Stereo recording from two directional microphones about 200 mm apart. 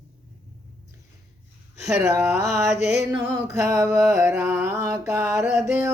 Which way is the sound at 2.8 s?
55° right (ahead or behind).